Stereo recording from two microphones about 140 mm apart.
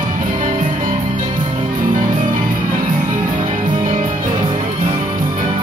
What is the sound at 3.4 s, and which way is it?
Music, 65° right (ahead or behind).